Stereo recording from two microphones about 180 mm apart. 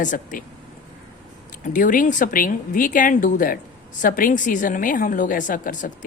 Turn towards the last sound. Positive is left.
turn(degrees=50)  # may be behind; listen again after turning